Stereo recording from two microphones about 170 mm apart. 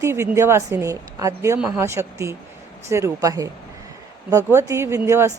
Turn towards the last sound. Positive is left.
turn(degrees=-15)  # may be behind; listen again after turning